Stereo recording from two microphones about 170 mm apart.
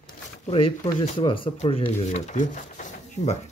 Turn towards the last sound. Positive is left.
turn(degrees=45)  # may be behind; listen again after turning